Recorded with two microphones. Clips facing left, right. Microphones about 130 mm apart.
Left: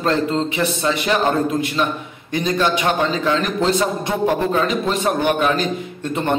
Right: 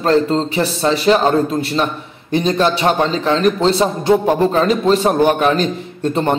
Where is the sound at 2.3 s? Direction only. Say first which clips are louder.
Right 4 dB; 30° right (ahead or behind).